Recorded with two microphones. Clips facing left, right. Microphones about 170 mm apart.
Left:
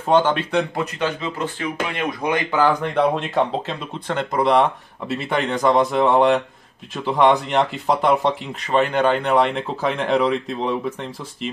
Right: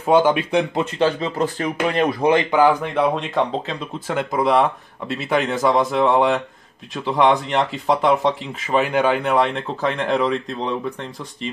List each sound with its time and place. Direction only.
0.0 s speech: 10° right (ahead or behind)
0.9 s speech: 35° right (ahead or behind)
2.8 s speech: 5° right (ahead or behind)